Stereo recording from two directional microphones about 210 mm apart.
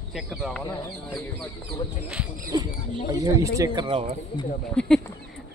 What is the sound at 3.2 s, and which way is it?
Speech, 15° right (ahead or behind).